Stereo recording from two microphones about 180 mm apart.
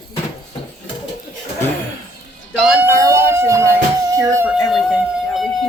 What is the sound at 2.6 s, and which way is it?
Music, 5° right (ahead or behind).